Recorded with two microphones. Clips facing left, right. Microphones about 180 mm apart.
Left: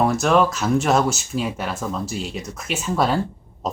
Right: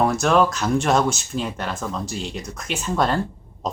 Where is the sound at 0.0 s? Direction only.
Centre (ahead or behind).